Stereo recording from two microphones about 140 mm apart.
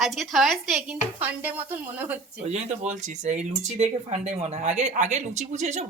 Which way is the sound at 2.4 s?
50° right (ahead or behind).